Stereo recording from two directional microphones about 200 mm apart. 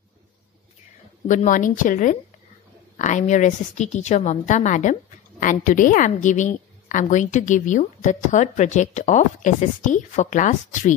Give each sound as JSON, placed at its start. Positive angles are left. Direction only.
{"t": 1.2, "sound": "a woman's voice", "side_deg": 40}